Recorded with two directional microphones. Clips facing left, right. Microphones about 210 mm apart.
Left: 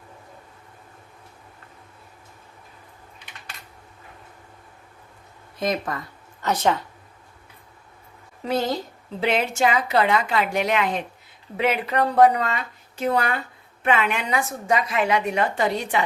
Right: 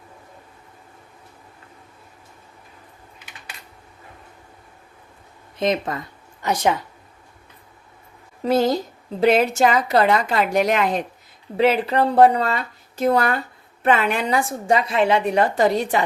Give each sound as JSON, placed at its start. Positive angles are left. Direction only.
{"t": 5.5, "sound": "speech", "side_deg": -25}
{"t": 6.4, "sound": "speech", "side_deg": -10}
{"t": 8.4, "sound": "a woman's voice", "side_deg": -40}